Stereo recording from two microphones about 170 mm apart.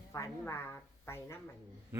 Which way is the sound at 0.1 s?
15° left (ahead or behind).